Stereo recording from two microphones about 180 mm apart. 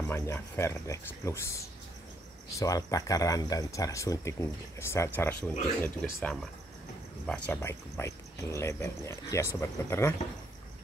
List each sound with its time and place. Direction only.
0.0 s speech: 15° left (ahead or behind)
7.2 s speech: 10° left (ahead or behind)